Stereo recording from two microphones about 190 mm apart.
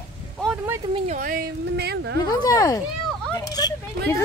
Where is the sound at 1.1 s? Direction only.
45° right (ahead or behind).